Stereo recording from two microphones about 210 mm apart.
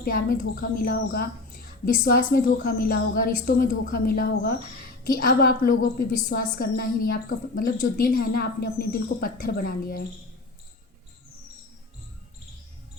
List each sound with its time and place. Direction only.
0.0 s a woman's voice: 45° left (ahead or behind)